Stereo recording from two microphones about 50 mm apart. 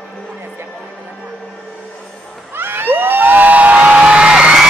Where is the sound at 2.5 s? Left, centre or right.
Right.